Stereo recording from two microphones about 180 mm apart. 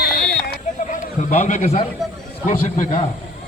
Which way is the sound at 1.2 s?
40° left (ahead or behind).